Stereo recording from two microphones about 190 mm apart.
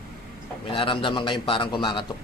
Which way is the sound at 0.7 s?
25° left (ahead or behind).